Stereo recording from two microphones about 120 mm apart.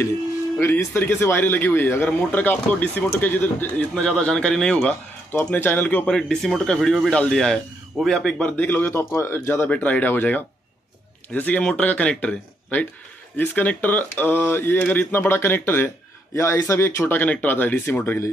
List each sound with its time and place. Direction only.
0.6 s speech: 20° left (ahead or behind)